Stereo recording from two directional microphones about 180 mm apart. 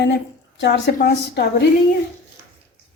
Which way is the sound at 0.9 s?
65° left (ahead or behind).